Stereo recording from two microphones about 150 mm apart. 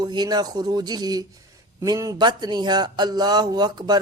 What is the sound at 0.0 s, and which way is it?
Speech, 30° right (ahead or behind).